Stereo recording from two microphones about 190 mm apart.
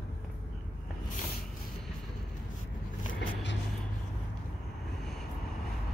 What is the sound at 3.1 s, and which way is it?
Vehicle, 70° left (ahead or behind).